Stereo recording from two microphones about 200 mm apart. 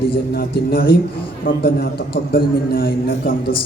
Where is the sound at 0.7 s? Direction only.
50° left (ahead or behind).